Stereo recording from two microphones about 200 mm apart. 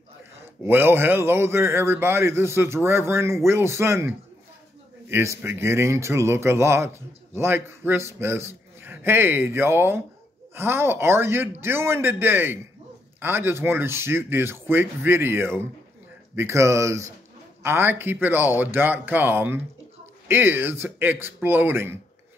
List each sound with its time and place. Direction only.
0.7 s a man's voice: 10° right (ahead or behind)